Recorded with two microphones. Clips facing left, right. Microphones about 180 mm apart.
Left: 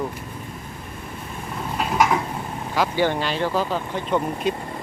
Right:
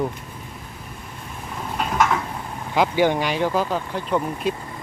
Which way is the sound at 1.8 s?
10° left (ahead or behind).